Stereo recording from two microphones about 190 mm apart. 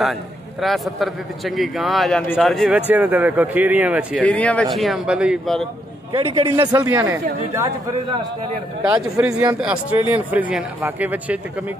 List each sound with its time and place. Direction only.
0.0 s a man's voice: centre (ahead or behind)
4.2 s a man's voice: 5° left (ahead or behind)
6.1 s a man's voice: 30° right (ahead or behind); by 11.3 s 10° right (ahead or behind)